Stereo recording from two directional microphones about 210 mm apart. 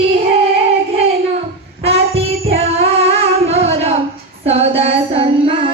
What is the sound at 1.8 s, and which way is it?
Child singing, 30° right (ahead or behind).